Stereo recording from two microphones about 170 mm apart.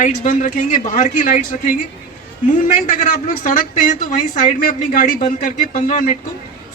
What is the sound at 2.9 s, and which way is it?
A man's voice, 50° left (ahead or behind).